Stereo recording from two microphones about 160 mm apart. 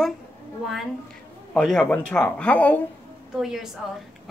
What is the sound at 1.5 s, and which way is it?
Speech, 5° left (ahead or behind).